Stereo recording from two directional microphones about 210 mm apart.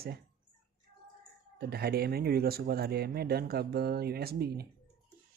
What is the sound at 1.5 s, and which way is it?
Speech, 50° right (ahead or behind).